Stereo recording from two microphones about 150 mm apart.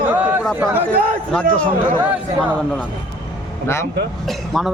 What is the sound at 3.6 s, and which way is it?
Speech, 15° left (ahead or behind).